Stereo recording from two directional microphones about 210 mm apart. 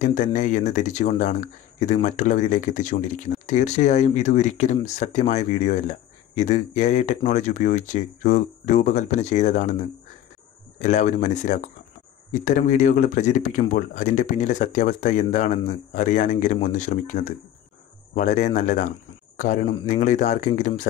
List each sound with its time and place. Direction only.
0.0 s speech: 35° left (ahead or behind)